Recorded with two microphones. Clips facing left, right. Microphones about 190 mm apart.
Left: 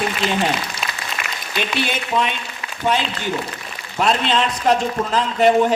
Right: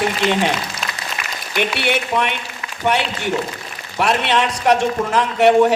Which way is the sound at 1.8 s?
70° right (ahead or behind).